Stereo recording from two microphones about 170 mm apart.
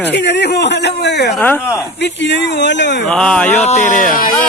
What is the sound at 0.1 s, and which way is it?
Speech, 90° left.